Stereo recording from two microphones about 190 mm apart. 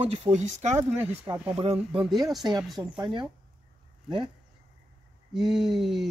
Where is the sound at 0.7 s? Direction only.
10° right (ahead or behind).